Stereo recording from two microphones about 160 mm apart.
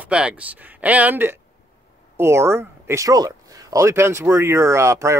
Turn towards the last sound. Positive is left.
turn(degrees=-20)  # may be behind; listen again after turning